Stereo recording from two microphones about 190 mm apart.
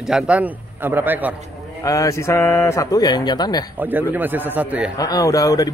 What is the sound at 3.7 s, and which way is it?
A man's voice, 10° right (ahead or behind).